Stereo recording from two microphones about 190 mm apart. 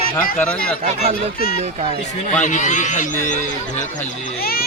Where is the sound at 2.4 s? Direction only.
40° left (ahead or behind).